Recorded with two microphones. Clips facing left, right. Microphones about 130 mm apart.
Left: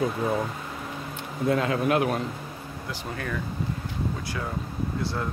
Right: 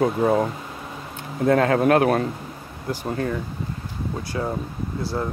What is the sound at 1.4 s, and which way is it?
Speech, 55° right (ahead or behind).